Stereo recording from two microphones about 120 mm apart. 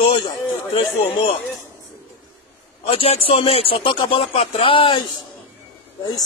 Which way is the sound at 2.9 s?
55° left (ahead or behind).